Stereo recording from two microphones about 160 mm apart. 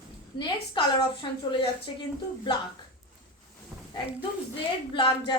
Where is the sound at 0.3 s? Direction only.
30° left (ahead or behind).